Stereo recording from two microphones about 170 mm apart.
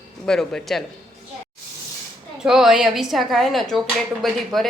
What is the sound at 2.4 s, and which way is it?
A woman's voice, centre (ahead or behind).